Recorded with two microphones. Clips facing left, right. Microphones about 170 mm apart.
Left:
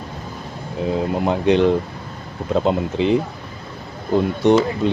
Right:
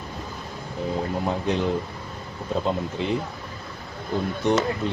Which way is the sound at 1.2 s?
90° left.